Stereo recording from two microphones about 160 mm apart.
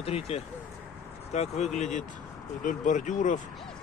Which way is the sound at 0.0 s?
40° left (ahead or behind).